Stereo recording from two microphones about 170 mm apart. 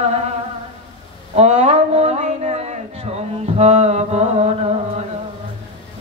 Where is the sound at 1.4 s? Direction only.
40° right (ahead or behind).